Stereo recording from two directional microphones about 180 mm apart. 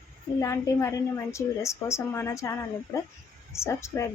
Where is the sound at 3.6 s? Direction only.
15° left (ahead or behind).